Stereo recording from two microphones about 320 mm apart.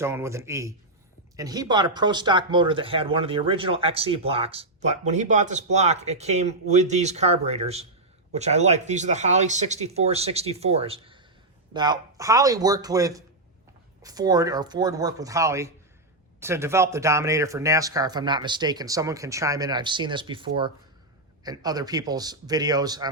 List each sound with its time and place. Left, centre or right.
0.0 s speech: centre